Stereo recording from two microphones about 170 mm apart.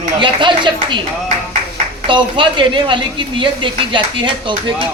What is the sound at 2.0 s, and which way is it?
Speech, 30° right (ahead or behind).